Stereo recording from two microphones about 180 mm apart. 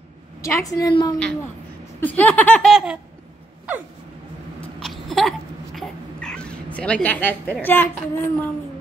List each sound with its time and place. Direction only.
0.4 s a woman's voice: 20° left (ahead or behind)
2.0 s child singing: 10° left (ahead or behind)
2.7 s laughter: 5° right (ahead or behind)
4.8 s a sound: centre (ahead or behind)
5.8 s cat: 5° left (ahead or behind)
7.6 s child singing: 10° left (ahead or behind)